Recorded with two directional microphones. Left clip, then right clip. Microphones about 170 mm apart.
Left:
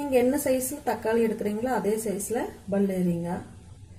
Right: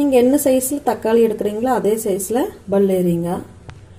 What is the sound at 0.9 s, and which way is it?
A woman's voice, 30° right (ahead or behind).